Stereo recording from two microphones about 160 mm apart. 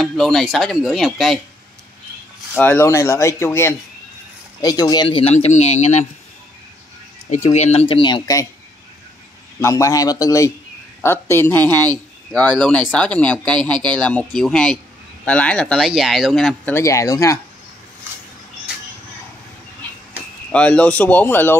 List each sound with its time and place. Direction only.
0.0 s a man's voice: centre (ahead or behind)
2.5 s speech: 10° left (ahead or behind); by 5.9 s 40° left (ahead or behind)
7.2 s speech: 45° left (ahead or behind); by 8.5 s 25° left (ahead or behind)
9.6 s a man's voice: 20° left (ahead or behind); by 16.7 s centre (ahead or behind)
16.7 s a man's voice: 20° left (ahead or behind)
19.8 s arrow: 10° left (ahead or behind)
20.5 s speech: 10° left (ahead or behind)